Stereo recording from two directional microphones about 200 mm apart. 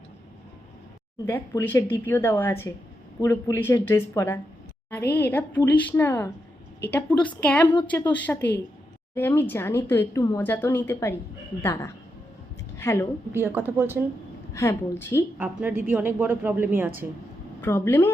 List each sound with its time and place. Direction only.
1.2 s speech: 15° left (ahead or behind)
8.4 s a woman's voice: 60° left (ahead or behind)
9.1 s a woman's voice: 10° left (ahead or behind)
13.3 s a woman's voice: 10° right (ahead or behind)
14.5 s speech: 15° left (ahead or behind)
15.4 s a woman's voice: 10° right (ahead or behind)
17.6 s speech: 10° left (ahead or behind)